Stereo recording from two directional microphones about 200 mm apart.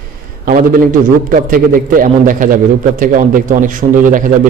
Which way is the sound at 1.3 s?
45° right (ahead or behind).